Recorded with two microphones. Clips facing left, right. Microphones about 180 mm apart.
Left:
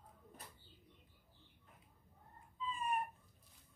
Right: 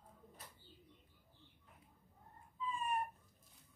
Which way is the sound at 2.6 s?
20° left (ahead or behind).